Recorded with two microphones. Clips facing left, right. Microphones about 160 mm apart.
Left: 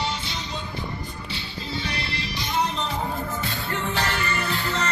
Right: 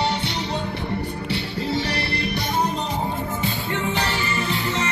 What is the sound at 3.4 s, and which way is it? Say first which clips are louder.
Music: right 4 dB; 5° right (ahead or behind).